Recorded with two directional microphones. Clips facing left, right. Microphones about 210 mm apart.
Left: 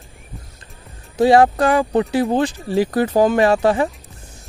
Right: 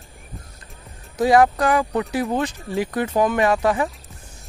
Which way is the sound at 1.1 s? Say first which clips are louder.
Left 3 dB; 30° left (ahead or behind).